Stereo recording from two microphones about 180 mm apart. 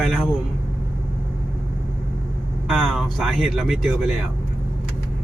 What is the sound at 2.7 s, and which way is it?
Speech, centre (ahead or behind).